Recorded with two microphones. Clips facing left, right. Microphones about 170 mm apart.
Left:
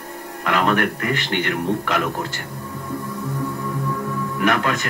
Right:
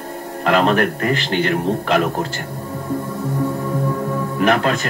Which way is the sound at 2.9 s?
40° right (ahead or behind).